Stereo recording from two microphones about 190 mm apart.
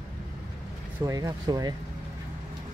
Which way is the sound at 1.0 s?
15° right (ahead or behind).